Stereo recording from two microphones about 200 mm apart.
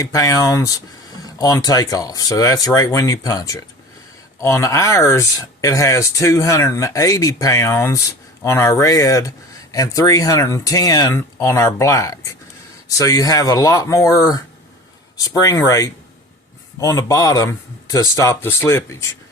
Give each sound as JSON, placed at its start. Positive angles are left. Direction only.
{"t": 0.0, "sound": "speech", "side_deg": 15}